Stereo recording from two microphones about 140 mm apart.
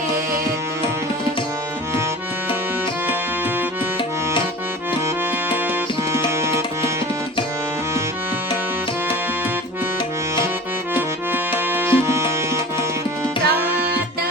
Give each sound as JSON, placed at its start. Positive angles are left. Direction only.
{"t": 6.1, "sound": "tabla", "side_deg": -20}
{"t": 11.5, "sound": "tabla", "side_deg": -15}
{"t": 13.6, "sound": "music", "side_deg": -10}